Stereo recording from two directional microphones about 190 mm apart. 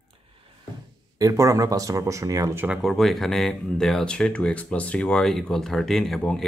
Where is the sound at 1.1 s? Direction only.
15° right (ahead or behind).